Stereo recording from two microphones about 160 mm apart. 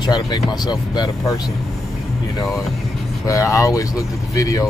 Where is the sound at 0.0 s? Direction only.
25° left (ahead or behind).